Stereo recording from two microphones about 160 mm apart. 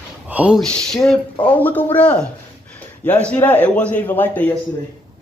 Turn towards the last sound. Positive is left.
turn(degrees=10)  # may be behind; listen again after turning